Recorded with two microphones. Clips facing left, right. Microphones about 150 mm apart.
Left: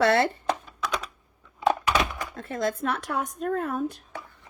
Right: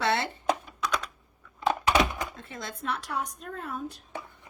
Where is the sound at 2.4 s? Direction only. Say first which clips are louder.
Left 11 dB; 50° left (ahead or behind).